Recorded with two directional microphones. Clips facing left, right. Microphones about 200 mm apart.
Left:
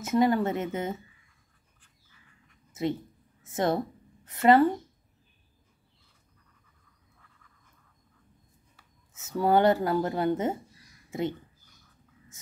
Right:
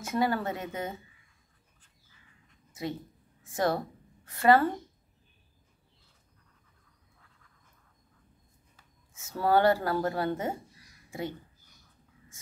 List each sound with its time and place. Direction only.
0.0 s speech: 20° left (ahead or behind)
3.4 s a woman's voice: 20° left (ahead or behind)
9.1 s speech: 20° left (ahead or behind)